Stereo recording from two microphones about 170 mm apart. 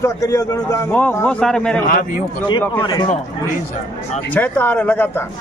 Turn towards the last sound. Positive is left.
turn(degrees=10)  # may be behind; listen again after turning